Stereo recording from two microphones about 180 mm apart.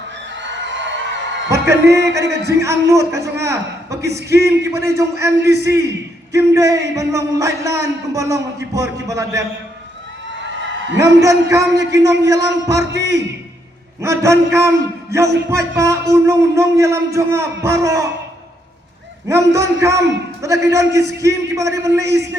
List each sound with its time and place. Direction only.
0.4 s a sound: 90° right
1.5 s a man's voice: 15° right (ahead or behind)
1.8 s speech: 70° right (ahead or behind)
2.6 s a man's voice: 15° right (ahead or behind)
11.2 s a man's voice: 20° right (ahead or behind)
19.3 s a man's voice: 15° right (ahead or behind)